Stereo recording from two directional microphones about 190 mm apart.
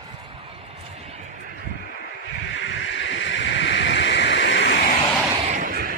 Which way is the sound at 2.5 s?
75° left (ahead or behind).